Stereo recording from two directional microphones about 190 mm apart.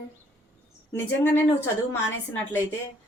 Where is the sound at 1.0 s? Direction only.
10° left (ahead or behind).